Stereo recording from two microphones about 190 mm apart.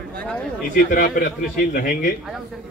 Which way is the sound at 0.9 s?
45° left (ahead or behind).